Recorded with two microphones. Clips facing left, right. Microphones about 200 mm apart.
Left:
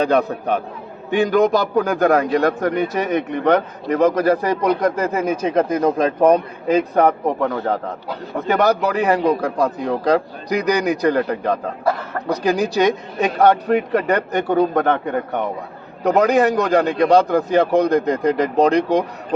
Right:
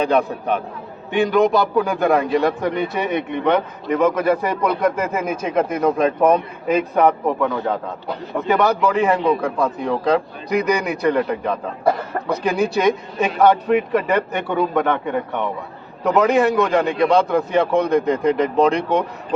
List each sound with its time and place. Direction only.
0.0 s a man's voice: 40° left (ahead or behind)